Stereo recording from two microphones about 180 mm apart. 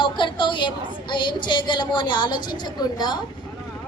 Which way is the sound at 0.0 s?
25° left (ahead or behind).